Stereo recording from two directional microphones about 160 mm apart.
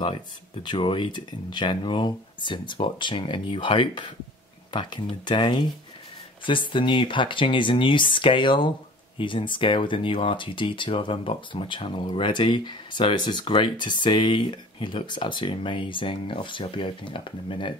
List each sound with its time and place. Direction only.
0.7 s speech: 30° left (ahead or behind)
5.2 s speech: 30° left (ahead or behind)